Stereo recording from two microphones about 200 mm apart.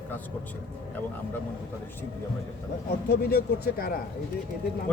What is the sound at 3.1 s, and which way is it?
Speech, 50° left (ahead or behind).